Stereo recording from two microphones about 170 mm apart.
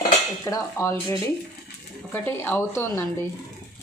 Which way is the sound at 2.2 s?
10° left (ahead or behind).